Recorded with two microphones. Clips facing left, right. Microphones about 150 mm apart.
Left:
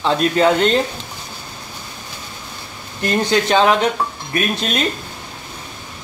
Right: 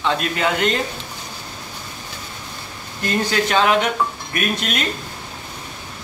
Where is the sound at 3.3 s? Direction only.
30° left (ahead or behind).